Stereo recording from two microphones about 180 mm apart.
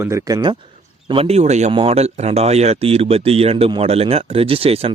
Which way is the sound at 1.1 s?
35° right (ahead or behind).